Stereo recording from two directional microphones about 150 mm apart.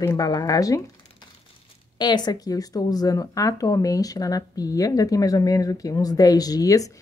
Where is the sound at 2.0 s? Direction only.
30° left (ahead or behind).